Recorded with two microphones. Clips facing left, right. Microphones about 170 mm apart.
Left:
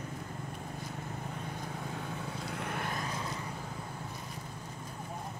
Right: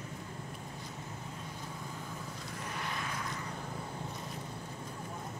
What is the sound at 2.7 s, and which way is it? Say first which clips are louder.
Vehicle: left 1 dB; 50° left (ahead or behind).